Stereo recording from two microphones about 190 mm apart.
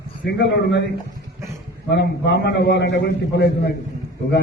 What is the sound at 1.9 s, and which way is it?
A man's voice, 65° left (ahead or behind).